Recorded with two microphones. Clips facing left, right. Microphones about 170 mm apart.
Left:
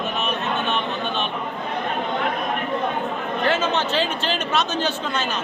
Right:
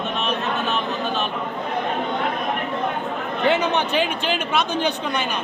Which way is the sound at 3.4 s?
15° right (ahead or behind).